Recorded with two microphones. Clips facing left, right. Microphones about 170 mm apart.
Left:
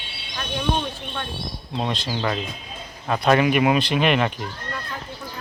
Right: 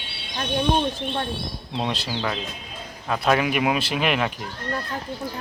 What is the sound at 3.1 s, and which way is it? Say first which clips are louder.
Speech: left 3 dB; centre (ahead or behind).